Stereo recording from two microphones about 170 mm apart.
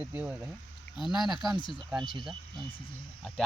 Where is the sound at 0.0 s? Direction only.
10° right (ahead or behind).